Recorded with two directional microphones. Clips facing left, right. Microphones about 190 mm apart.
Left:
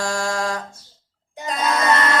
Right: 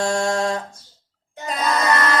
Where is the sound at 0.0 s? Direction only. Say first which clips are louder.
Right 3 dB; 25° right (ahead or behind).